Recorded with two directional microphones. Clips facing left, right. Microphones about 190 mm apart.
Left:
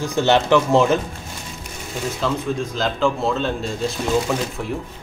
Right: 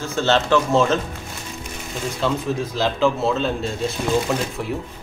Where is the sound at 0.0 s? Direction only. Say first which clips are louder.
Left 2 dB; 15° left (ahead or behind).